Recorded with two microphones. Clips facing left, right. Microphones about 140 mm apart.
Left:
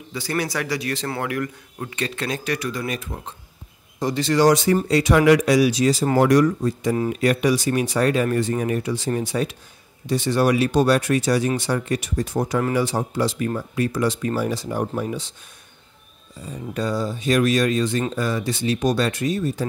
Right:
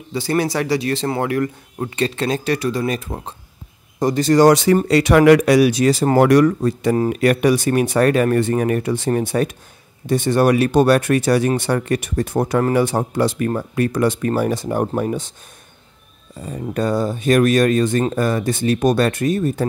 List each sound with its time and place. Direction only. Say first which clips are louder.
0.1 s speech: right 6 dB; 30° right (ahead or behind)
4.0 s speech: right 5 dB; 45° right (ahead or behind)
4.5 s speech: right 4 dB; 80° right
4.7 s speech: right 4 dB; 70° right (ahead or behind); by 15.3 s 50° right (ahead or behind)
16.4 s speech: right 5 dB; 55° right (ahead or behind)